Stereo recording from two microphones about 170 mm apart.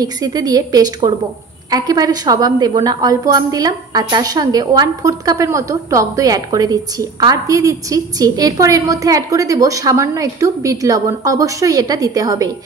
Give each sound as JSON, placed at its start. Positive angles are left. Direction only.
{"t": 0.0, "sound": "a woman's voice", "side_deg": -20}